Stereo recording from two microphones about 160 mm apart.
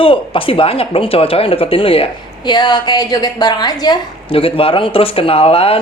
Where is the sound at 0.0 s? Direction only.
35° left (ahead or behind).